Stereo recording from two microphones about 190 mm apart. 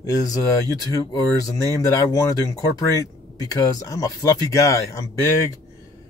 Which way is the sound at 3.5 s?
20° left (ahead or behind).